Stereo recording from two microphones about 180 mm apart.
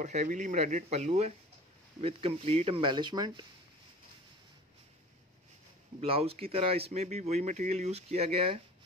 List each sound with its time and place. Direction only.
0.0 s speech: 40° right (ahead or behind); by 3.4 s 25° right (ahead or behind)
5.9 s speech: 35° right (ahead or behind)